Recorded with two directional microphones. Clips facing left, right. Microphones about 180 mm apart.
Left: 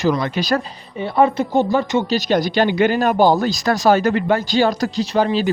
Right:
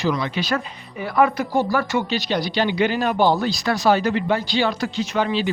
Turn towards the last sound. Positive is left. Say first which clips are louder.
# left 4 dB
turn(degrees=40)  # may be behind; listen again after turning